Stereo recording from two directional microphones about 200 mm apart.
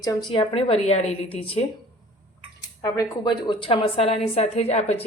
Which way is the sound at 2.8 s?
20° left (ahead or behind).